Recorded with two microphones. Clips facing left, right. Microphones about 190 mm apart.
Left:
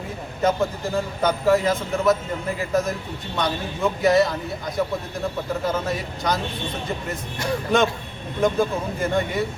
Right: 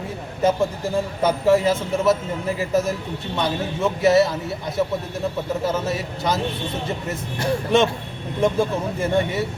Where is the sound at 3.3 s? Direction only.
5° right (ahead or behind).